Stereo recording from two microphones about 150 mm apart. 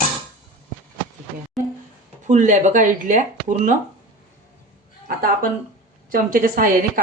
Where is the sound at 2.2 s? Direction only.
55° right (ahead or behind).